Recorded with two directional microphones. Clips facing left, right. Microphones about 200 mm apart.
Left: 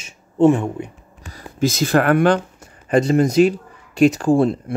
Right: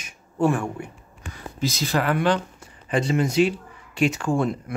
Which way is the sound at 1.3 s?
50° left (ahead or behind).